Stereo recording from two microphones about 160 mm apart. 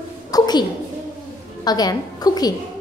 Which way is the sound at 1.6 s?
25° left (ahead or behind).